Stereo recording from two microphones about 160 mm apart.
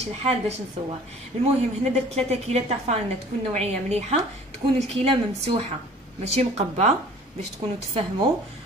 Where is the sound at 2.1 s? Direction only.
40° right (ahead or behind).